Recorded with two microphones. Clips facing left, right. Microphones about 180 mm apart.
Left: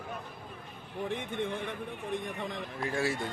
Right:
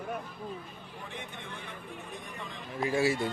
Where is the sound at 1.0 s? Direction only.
55° left (ahead or behind).